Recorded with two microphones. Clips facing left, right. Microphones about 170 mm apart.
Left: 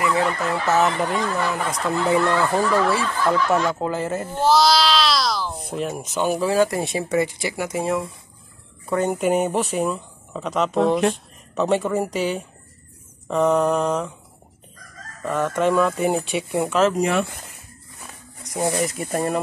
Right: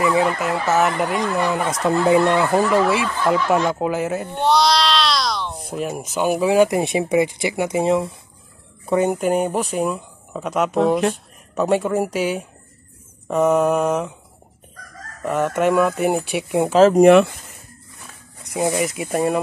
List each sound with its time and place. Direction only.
0.0 s speech: 15° right (ahead or behind)
4.1 s speech: centre (ahead or behind); by 9.1 s 15° right (ahead or behind)
9.1 s speech: centre (ahead or behind)
15.2 s speech: 15° right (ahead or behind)
16.6 s speech: 30° right (ahead or behind)
17.0 s speech: 70° right (ahead or behind)
18.6 s speech: 15° right (ahead or behind)